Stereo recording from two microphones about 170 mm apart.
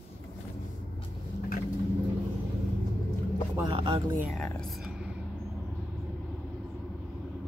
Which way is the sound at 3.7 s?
35° right (ahead or behind).